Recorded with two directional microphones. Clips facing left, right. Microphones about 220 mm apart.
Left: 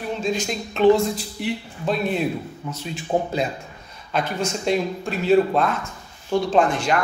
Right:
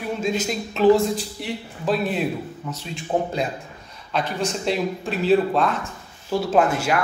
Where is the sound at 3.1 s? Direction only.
10° left (ahead or behind).